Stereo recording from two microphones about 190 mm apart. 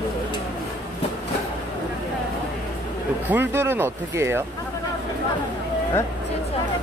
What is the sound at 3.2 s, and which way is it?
Speech, 10° right (ahead or behind).